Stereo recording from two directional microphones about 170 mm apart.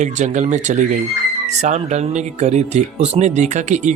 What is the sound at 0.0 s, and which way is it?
Speech, 45° right (ahead or behind).